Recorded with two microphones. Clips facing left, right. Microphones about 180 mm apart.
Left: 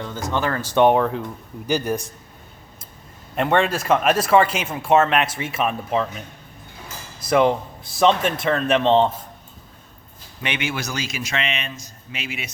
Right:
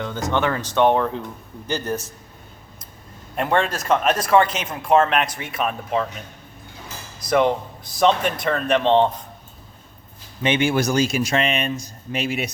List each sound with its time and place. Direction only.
0.0 s speech: 5° left (ahead or behind)
3.3 s a man's voice: centre (ahead or behind)
7.3 s a man's voice: 5° left (ahead or behind)
10.4 s speech: 30° right (ahead or behind)
11.3 s speech: 45° right (ahead or behind)